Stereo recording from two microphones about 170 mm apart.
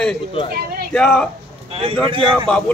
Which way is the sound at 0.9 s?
5° left (ahead or behind).